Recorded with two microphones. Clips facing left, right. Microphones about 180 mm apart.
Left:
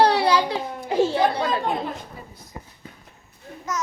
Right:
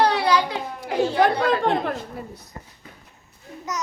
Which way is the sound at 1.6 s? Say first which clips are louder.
Right 4 dB; 70° right (ahead or behind).